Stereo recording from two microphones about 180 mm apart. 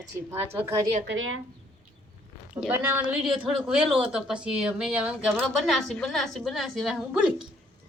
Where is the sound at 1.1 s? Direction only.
90° right.